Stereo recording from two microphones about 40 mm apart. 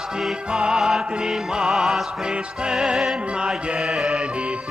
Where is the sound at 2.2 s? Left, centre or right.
Centre.